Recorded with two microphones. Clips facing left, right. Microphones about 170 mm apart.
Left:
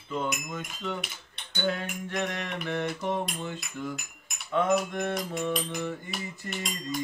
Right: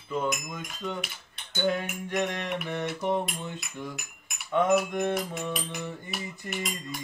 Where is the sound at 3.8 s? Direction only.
20° right (ahead or behind).